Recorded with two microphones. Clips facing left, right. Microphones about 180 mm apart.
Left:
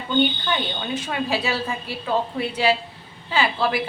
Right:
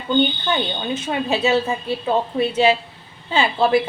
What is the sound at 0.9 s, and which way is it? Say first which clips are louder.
A woman's voice: right 2 dB; 25° right (ahead or behind).